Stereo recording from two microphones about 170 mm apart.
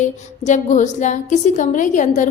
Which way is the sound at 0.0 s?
45° left (ahead or behind).